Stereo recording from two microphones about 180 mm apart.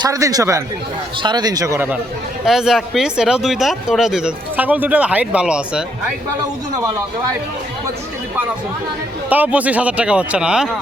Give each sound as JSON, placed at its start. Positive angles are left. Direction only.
{"t": 0.0, "sound": "a man's voice", "side_deg": -20}
{"t": 2.4, "sound": "speech", "side_deg": 0}
{"t": 9.3, "sound": "speech", "side_deg": -10}